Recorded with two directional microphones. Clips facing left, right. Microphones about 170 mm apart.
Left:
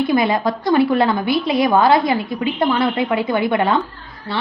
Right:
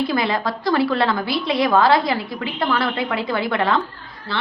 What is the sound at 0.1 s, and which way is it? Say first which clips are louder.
A woman's voice: left 5 dB; 20° left (ahead or behind).